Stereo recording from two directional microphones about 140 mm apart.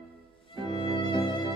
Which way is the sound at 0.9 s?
30° left (ahead or behind).